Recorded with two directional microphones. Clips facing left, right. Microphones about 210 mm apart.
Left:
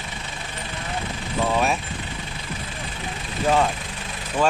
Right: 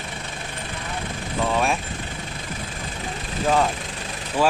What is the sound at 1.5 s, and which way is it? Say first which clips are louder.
Vehicle: even; centre (ahead or behind).